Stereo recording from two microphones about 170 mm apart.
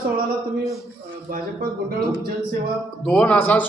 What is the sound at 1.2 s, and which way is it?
Speech, 55° right (ahead or behind).